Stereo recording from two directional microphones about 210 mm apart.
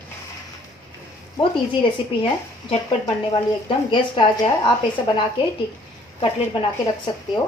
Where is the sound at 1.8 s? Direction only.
25° left (ahead or behind).